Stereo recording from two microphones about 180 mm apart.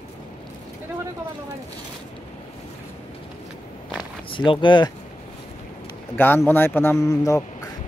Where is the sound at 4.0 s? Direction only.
25° left (ahead or behind).